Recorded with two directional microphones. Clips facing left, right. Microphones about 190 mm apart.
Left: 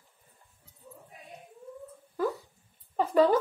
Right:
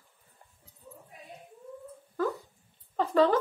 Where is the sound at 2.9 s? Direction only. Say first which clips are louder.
Left 1 dB; 10° left (ahead or behind).